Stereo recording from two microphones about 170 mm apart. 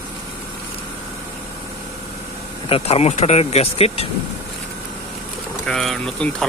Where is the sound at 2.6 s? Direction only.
35° left (ahead or behind).